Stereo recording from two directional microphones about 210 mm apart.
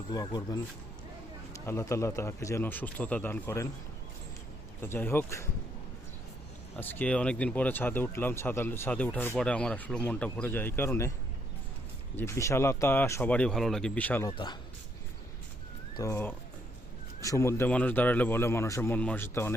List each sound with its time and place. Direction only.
0.1 s speech: 20° left (ahead or behind)
1.6 s speech: 15° left (ahead or behind)
4.8 s speech: 10° left (ahead or behind)
6.7 s speech: 10° left (ahead or behind)
12.1 s speech: 10° left (ahead or behind)
14.3 s speech: 20° left (ahead or behind)
16.0 s speech: 10° left (ahead or behind)